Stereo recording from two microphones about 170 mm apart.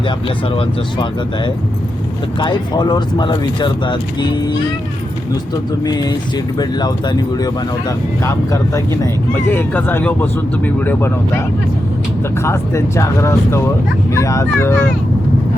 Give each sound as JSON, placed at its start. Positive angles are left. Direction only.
{"t": 2.4, "sound": "speech", "side_deg": 25}
{"t": 5.8, "sound": "speech", "side_deg": 25}